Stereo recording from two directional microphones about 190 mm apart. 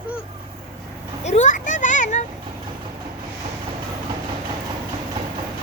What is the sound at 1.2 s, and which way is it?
Children playing, 40° left (ahead or behind).